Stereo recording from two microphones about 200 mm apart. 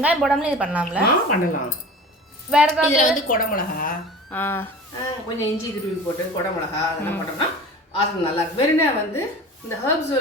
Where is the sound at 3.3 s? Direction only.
45° left (ahead or behind).